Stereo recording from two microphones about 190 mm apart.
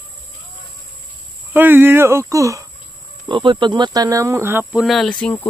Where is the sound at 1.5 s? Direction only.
10° right (ahead or behind).